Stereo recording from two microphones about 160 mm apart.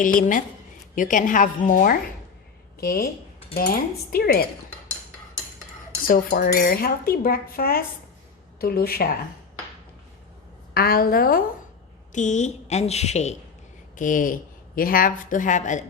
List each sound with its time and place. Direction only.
0.0 s a woman's voice: 55° left (ahead or behind)
2.8 s speech: 70° left (ahead or behind)
6.1 s speech: 65° left (ahead or behind)
10.8 s a woman's voice: 70° left (ahead or behind)
12.1 s a woman's voice: 50° left (ahead or behind)
13.9 s a woman's voice: 55° left (ahead or behind)